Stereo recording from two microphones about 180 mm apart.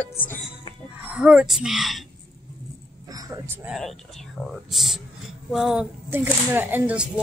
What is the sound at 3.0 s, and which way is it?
Speech, 20° right (ahead or behind).